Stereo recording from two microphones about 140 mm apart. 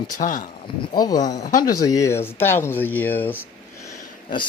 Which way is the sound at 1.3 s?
65° left (ahead or behind).